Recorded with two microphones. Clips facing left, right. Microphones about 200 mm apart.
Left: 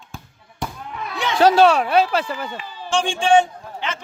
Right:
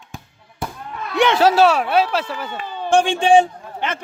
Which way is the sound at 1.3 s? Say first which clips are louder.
Left 3 dB; 5° right (ahead or behind).